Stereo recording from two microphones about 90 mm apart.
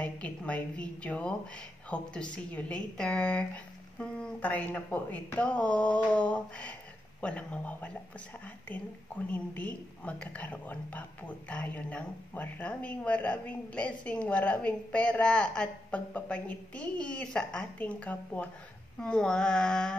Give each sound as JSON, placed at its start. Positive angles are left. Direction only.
{"t": 0.0, "sound": "a woman's voice", "side_deg": 15}